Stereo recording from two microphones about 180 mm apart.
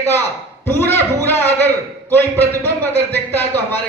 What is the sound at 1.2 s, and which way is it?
A man's voice, 10° left (ahead or behind).